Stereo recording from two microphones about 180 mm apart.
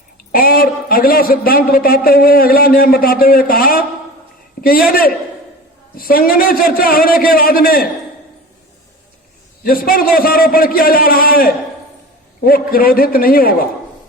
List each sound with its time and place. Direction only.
0.3 s a man's voice: 55° left (ahead or behind)
9.6 s a man's voice: 55° left (ahead or behind)